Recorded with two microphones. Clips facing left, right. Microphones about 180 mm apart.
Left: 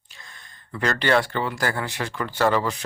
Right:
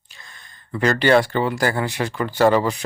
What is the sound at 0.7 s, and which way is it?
Speech, 10° right (ahead or behind).